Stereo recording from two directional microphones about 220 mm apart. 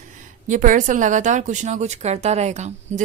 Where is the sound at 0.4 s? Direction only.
35° right (ahead or behind).